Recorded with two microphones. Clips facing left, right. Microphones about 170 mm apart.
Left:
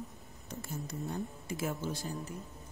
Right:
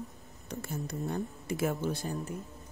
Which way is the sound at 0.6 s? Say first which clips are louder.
Right 4 dB; 65° right (ahead or behind).